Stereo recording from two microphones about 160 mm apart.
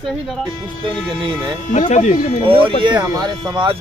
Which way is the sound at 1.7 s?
50° left (ahead or behind).